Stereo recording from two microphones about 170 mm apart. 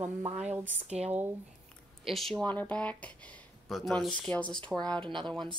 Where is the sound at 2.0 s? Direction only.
Centre (ahead or behind).